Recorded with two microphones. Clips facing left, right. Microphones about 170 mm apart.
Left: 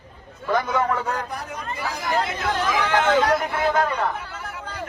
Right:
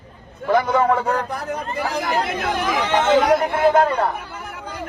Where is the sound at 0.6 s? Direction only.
70° right (ahead or behind).